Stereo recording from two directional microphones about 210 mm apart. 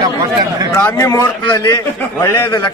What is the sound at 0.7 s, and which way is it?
A man's voice, 10° left (ahead or behind).